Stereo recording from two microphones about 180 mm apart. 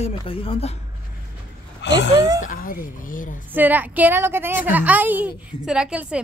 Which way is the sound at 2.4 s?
50° left (ahead or behind).